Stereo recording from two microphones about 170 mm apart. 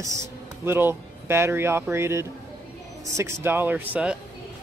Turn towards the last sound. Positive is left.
turn(degrees=-10)  # may be behind; listen again after turning